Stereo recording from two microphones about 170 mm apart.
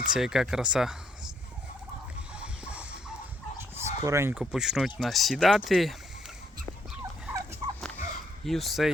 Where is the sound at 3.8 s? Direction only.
15° right (ahead or behind).